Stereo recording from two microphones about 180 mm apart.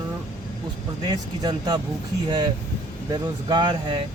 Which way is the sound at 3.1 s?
25° right (ahead or behind).